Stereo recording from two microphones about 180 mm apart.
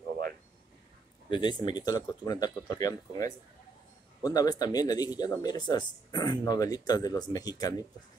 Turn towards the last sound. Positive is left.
turn(degrees=20)  # may be behind; listen again after turning